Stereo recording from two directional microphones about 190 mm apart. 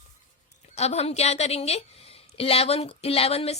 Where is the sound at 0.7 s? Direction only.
35° left (ahead or behind).